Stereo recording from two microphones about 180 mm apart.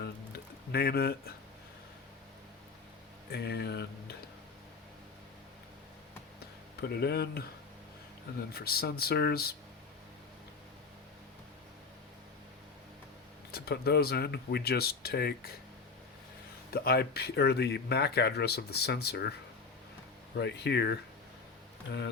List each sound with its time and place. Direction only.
0.0 s a sound: 60° left (ahead or behind)
3.3 s speech: 65° left (ahead or behind)
6.8 s speech: 65° left (ahead or behind)
8.5 s speech: 60° left (ahead or behind)
13.5 s speech: 60° left (ahead or behind)
16.7 s speech: 60° left (ahead or behind)
20.3 s speech: 65° left (ahead or behind)